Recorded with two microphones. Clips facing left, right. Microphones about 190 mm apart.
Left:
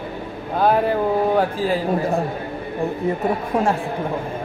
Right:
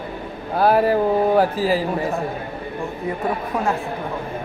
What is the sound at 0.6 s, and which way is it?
Speech, 5° right (ahead or behind).